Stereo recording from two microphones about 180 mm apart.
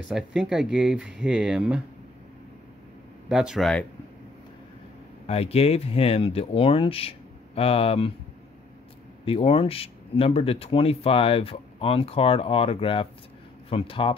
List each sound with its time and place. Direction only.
0.1 s speech: centre (ahead or behind)
3.3 s speech: centre (ahead or behind)
5.2 s speech: 35° left (ahead or behind)
9.2 s speech: 30° left (ahead or behind)